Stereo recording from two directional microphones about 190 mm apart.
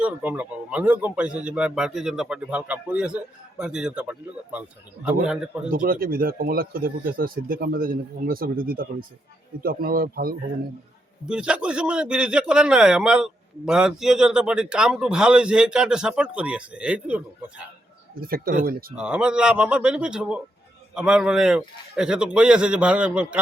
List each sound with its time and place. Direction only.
0.0 s a man's voice: 10° right (ahead or behind)
5.7 s speech: 50° right (ahead or behind)
11.3 s a man's voice: 5° right (ahead or behind)
18.1 s speech: 50° right (ahead or behind)
18.9 s a man's voice: 5° right (ahead or behind)